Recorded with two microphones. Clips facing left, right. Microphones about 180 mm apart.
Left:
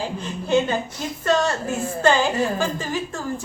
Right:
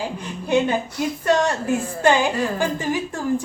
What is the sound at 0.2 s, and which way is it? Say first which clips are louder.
A woman's voice: even; 15° right (ahead or behind).